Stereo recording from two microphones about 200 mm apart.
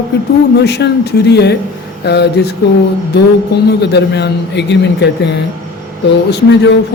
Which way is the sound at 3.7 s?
60° left (ahead or behind).